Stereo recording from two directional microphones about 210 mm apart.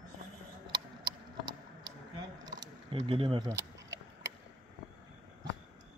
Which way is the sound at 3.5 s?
60° right (ahead or behind).